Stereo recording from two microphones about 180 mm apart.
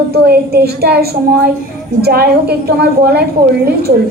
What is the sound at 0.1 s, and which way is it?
Music, 60° right (ahead or behind).